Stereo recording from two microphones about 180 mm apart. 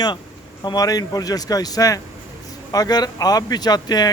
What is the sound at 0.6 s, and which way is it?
Speech, 20° left (ahead or behind).